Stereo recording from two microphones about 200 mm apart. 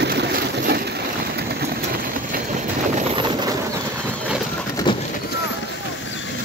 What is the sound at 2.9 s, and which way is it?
Vehicle, 30° right (ahead or behind).